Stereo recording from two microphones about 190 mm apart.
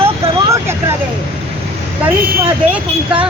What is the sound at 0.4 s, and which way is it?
Vehicle, 15° right (ahead or behind).